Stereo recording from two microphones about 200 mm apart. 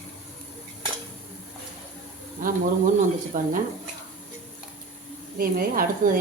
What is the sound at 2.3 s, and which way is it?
Speech, 45° right (ahead or behind).